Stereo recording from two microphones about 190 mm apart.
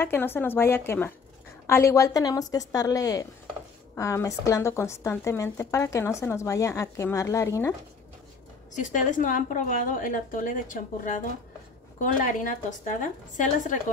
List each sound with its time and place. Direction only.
0.0 s a woman's voice: 10° left (ahead or behind)
8.7 s a woman's voice: 40° left (ahead or behind)